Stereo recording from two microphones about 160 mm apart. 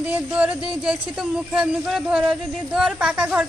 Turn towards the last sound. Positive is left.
turn(degrees=-5)  # may be behind; listen again after turning